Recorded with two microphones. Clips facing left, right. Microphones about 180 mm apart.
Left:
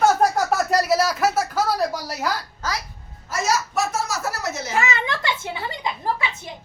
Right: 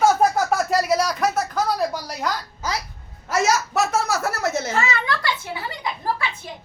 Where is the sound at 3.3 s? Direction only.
65° right (ahead or behind).